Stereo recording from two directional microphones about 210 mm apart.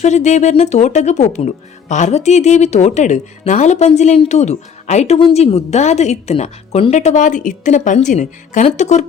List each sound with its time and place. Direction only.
0.0 s speech: 35° left (ahead or behind)